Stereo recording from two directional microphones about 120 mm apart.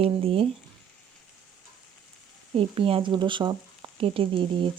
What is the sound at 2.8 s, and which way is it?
Speech, 50° right (ahead or behind).